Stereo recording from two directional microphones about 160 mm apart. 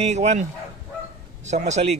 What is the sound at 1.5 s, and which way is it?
Speech, 45° right (ahead or behind).